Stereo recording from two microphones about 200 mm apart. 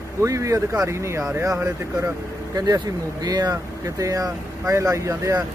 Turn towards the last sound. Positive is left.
turn(degrees=-15)  # may be behind; listen again after turning